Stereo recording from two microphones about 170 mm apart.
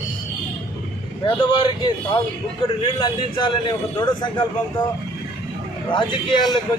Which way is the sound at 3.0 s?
25° left (ahead or behind).